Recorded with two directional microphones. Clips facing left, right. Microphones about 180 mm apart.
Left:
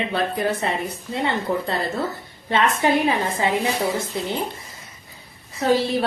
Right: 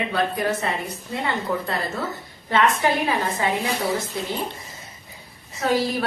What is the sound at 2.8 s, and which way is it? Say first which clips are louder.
Speech: left 3 dB; 20° left (ahead or behind).